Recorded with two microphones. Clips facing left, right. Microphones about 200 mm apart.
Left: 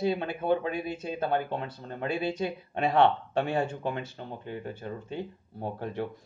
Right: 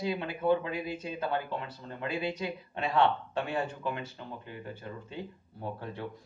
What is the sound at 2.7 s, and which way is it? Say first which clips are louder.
Speech: left 4 dB; 50° left (ahead or behind).